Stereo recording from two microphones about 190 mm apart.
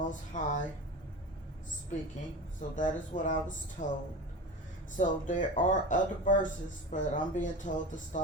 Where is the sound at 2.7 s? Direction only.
40° left (ahead or behind).